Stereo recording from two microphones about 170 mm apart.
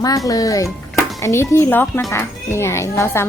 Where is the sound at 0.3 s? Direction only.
20° left (ahead or behind).